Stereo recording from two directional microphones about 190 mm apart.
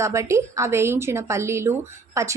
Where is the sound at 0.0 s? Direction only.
15° right (ahead or behind).